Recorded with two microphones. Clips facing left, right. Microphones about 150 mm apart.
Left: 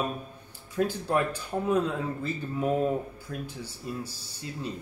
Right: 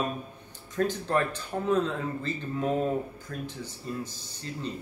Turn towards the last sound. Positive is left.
turn(degrees=10)  # may be behind; listen again after turning